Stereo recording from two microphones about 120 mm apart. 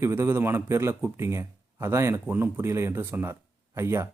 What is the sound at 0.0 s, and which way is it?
Speech, 20° right (ahead or behind).